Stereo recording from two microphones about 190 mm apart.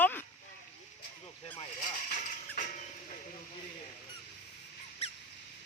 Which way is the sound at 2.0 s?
40° left (ahead or behind).